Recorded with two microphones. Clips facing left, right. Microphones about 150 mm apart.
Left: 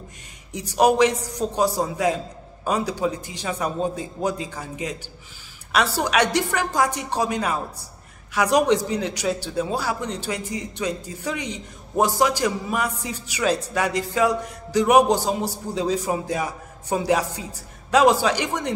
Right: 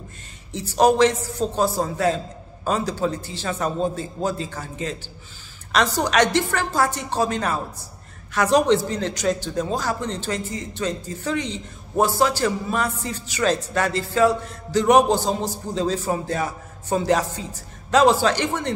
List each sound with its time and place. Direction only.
0.5 s a man's voice: 15° left (ahead or behind)